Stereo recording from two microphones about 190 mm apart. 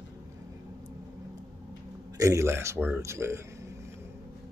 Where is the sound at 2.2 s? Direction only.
15° right (ahead or behind).